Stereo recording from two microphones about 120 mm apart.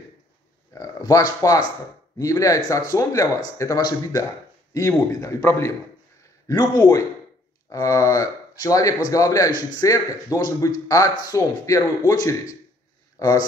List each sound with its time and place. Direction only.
0.7 s speech: 30° left (ahead or behind)
6.4 s speech: 35° left (ahead or behind)